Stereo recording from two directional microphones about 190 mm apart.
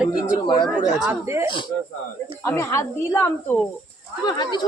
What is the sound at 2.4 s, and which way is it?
A woman's voice, 15° left (ahead or behind).